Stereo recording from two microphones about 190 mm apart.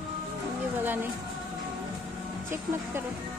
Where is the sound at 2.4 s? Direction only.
10° right (ahead or behind).